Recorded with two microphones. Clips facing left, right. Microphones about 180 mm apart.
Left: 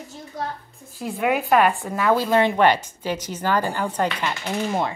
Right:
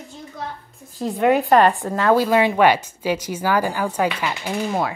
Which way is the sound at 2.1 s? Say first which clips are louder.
Right 2 dB; 10° right (ahead or behind).